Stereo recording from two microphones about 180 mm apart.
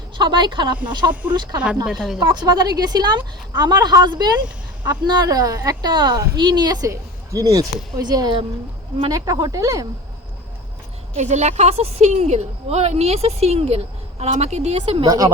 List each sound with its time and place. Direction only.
0.2 s a woman's voice: 25° right (ahead or behind)
1.6 s a woman's voice: 5° right (ahead or behind)
2.1 s a woman's voice: 25° right (ahead or behind)
11.1 s a woman's voice: 40° right (ahead or behind); by 15.3 s 20° right (ahead or behind)